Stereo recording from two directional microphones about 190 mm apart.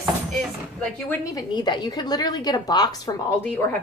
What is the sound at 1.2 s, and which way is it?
A woman's voice, 20° left (ahead or behind).